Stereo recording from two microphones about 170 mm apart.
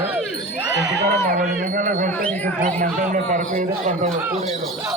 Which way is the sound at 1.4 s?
50° right (ahead or behind).